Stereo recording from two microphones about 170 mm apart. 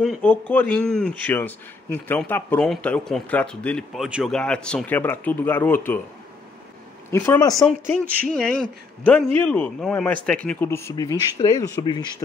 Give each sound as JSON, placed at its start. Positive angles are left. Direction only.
{"t": 0.0, "sound": "a man's voice", "side_deg": 5}
{"t": 7.1, "sound": "speech", "side_deg": 15}
{"t": 8.5, "sound": "a man's voice", "side_deg": 5}